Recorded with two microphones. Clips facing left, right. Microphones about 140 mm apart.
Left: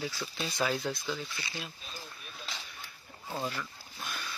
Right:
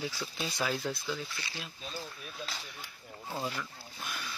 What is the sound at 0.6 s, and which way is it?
Speech, centre (ahead or behind).